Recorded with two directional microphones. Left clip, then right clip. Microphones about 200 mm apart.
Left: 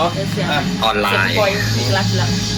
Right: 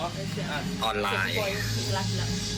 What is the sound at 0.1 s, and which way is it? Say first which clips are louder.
Speech: left 14 dB; 45° right (ahead or behind).